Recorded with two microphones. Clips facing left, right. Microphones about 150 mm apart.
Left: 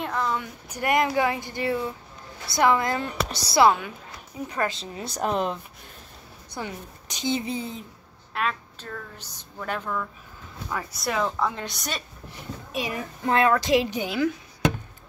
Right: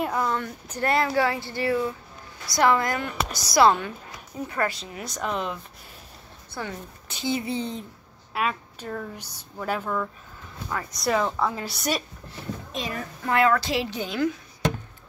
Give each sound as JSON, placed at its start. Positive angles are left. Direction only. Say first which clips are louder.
{"t": 0.0, "sound": "speech", "louder": "right 2 dB", "side_deg": -5}
{"t": 0.4, "sound": "a woman's voice", "louder": "right 3 dB", "side_deg": 15}
{"t": 3.6, "sound": "speech", "louder": "even", "side_deg": 10}
{"t": 4.5, "sound": "a woman's voice", "louder": "even", "side_deg": 20}
{"t": 6.5, "sound": "speech", "louder": "even", "side_deg": 15}
{"t": 8.3, "sound": "a sound", "louder": "right 1 dB", "side_deg": -5}
{"t": 8.8, "sound": "speech", "louder": "right 5 dB", "side_deg": -10}
{"t": 10.7, "sound": "a woman's voice", "louder": "right 4 dB", "side_deg": 5}
{"t": 12.3, "sound": "a child's voice", "louder": "even", "side_deg": 15}